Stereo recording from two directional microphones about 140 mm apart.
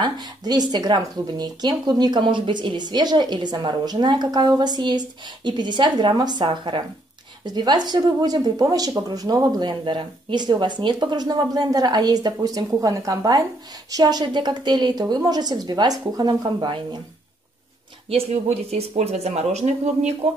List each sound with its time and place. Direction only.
0.0 s a woman's voice: 30° right (ahead or behind)
18.1 s speech: 50° right (ahead or behind)